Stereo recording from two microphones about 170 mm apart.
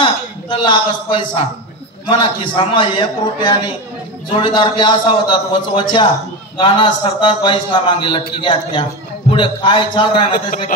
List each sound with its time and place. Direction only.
0.0 s a man's voice: 30° left (ahead or behind)
9.3 s a man's voice: 30° left (ahead or behind)